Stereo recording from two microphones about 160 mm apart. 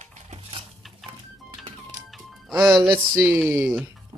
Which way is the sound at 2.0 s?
Centre (ahead or behind).